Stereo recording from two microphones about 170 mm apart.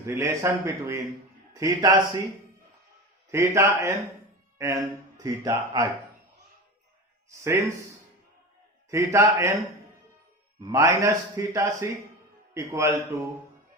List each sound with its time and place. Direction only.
0.0 s a man's voice: 15° right (ahead or behind)
3.3 s a man's voice: 15° right (ahead or behind)
7.3 s speech: 15° right (ahead or behind)
8.9 s a man's voice: 15° right (ahead or behind)
10.6 s a man's voice: 20° right (ahead or behind)